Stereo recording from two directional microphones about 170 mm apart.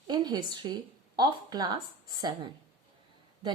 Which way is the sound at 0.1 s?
25° right (ahead or behind).